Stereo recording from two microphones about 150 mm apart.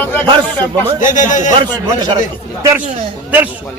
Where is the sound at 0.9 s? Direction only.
60° left (ahead or behind).